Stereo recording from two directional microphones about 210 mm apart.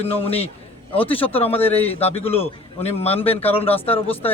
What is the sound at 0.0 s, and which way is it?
Speech, 30° left (ahead or behind).